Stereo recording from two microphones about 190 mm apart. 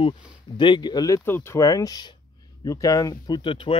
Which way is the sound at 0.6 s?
25° left (ahead or behind).